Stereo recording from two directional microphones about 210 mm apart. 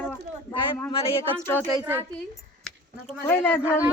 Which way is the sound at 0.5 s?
25° left (ahead or behind).